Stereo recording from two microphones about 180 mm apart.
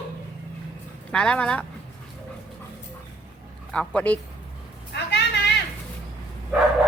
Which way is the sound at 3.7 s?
5° left (ahead or behind).